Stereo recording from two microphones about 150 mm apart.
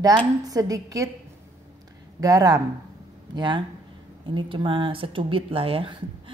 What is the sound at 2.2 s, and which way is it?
A woman's voice, 25° right (ahead or behind).